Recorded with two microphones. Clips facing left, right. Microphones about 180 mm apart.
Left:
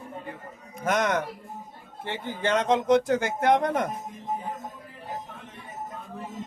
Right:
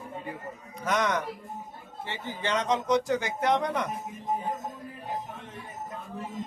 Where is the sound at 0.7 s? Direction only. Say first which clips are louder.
Left 2 dB; 50° left (ahead or behind).